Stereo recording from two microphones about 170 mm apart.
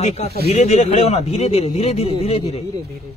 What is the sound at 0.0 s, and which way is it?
Speech, 40° left (ahead or behind).